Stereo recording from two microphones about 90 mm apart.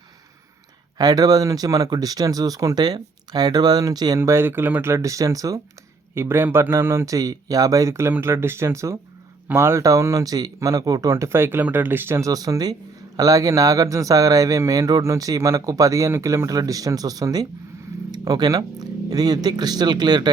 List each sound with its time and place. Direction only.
0.9 s speech: 45° right (ahead or behind)
4.2 s speech: 30° right (ahead or behind)
6.1 s speech: 25° right (ahead or behind)
11.1 s speech: 30° right (ahead or behind)
12.2 s speech: 40° right (ahead or behind)